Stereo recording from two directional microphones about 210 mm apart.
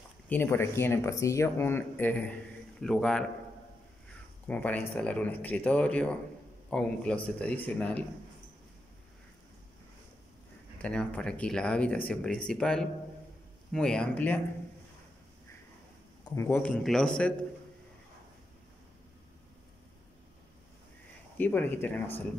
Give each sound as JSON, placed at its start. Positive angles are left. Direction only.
{"t": 0.3, "sound": "speech", "side_deg": 10}
{"t": 4.5, "sound": "speech", "side_deg": 5}
{"t": 10.8, "sound": "speech", "side_deg": 5}
{"t": 16.3, "sound": "speech", "side_deg": 10}
{"t": 21.4, "sound": "speech", "side_deg": 10}